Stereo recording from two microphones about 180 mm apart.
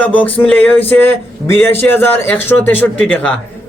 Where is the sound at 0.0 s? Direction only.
10° left (ahead or behind).